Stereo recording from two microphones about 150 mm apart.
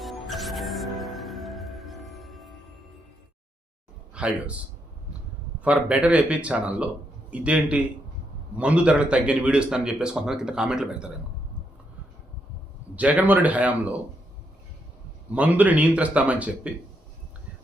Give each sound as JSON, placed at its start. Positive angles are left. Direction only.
{"t": 0.0, "sound": "music", "side_deg": 0}
{"t": 4.1, "sound": "a man's voice", "side_deg": -5}
{"t": 13.0, "sound": "a man's voice", "side_deg": -10}
{"t": 15.4, "sound": "a man's voice", "side_deg": -10}